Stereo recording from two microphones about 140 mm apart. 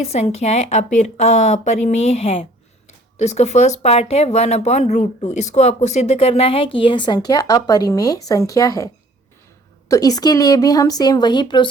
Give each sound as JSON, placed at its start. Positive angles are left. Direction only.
{"t": 0.0, "sound": "speech", "side_deg": 50}
{"t": 9.9, "sound": "a woman's voice", "side_deg": 25}